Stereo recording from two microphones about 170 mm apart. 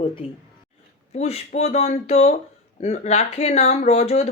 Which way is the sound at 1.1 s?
40° left (ahead or behind).